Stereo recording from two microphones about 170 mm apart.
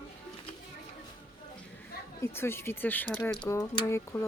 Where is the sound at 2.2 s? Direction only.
15° left (ahead or behind).